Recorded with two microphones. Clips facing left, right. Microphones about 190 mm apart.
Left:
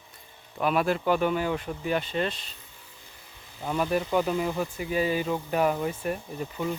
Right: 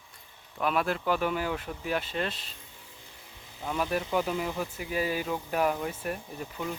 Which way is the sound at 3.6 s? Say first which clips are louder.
Left 3 dB; centre (ahead or behind).